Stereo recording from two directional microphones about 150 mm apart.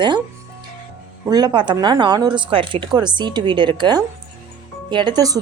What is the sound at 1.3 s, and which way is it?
A woman's voice, 30° right (ahead or behind).